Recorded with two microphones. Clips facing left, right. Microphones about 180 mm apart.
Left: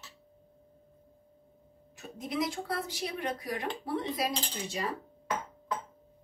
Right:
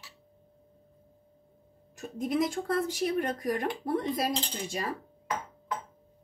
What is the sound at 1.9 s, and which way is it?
Speech, 50° right (ahead or behind).